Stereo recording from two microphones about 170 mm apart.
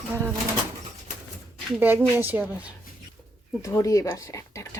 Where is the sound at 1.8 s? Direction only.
10° right (ahead or behind).